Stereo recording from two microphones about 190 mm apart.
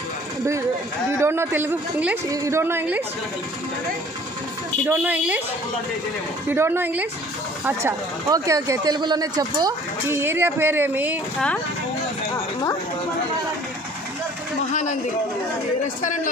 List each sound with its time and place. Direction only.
1.1 s speech: 15° right (ahead or behind)
4.8 s speech: 10° right (ahead or behind)
6.5 s speech: 10° right (ahead or behind)
11.3 s speech: 5° left (ahead or behind)
14.7 s speech: 40° left (ahead or behind)